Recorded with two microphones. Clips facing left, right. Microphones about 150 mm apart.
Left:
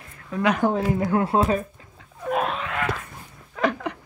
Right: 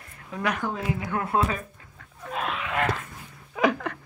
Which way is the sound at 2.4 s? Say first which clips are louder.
Left 4 dB; 40° left (ahead or behind).